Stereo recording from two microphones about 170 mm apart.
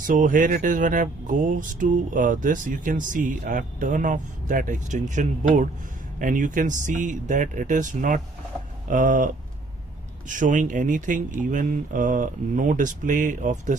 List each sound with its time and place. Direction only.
0.0 s speech: 50° right (ahead or behind)